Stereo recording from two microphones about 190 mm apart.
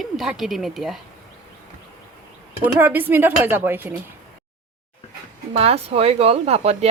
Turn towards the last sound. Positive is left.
turn(degrees=-35)  # may be behind; listen again after turning